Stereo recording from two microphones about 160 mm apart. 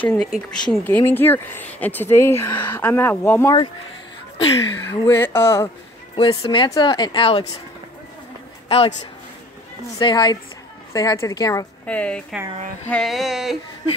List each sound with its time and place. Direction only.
0.0 s carnatic music: 5° left (ahead or behind)
0.7 s speech: 10° left (ahead or behind)
4.7 s speech: 15° left (ahead or behind)
6.1 s speech: 35° left (ahead or behind)
8.6 s speech: 35° left (ahead or behind)
9.9 s speech: 25° left (ahead or behind)
11.8 s speech: 10° left (ahead or behind)
12.8 s carnatic music: 5° left (ahead or behind)